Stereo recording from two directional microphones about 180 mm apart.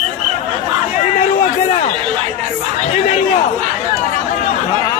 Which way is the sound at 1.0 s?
45° left (ahead or behind).